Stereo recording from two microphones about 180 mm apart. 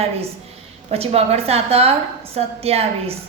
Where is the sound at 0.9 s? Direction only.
35° right (ahead or behind).